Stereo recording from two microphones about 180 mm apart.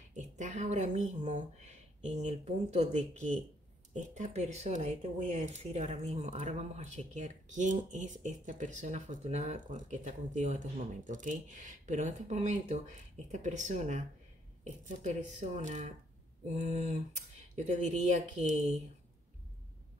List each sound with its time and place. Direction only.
0.1 s speech: 45° right (ahead or behind)